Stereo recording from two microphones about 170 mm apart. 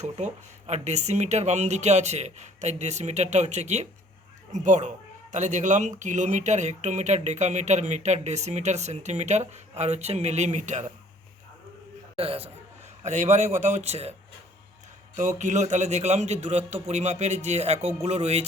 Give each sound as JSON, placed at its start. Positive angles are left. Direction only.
{"t": 0.2, "sound": "a man's voice", "side_deg": -45}
{"t": 12.1, "sound": "a man's voice", "side_deg": -35}
{"t": 15.1, "sound": "a man's voice", "side_deg": -45}